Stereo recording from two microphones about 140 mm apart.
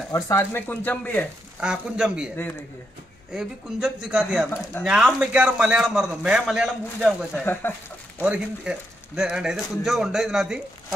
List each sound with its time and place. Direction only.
0.1 s speech: 20° left (ahead or behind)
1.6 s a man's voice: 5° right (ahead or behind)
3.3 s a man's voice: 5° right (ahead or behind)
7.7 s speech: 15° left (ahead or behind)
8.2 s a man's voice: 10° right (ahead or behind)